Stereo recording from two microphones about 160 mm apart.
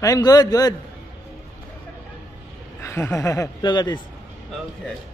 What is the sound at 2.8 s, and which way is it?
Speech, 15° left (ahead or behind).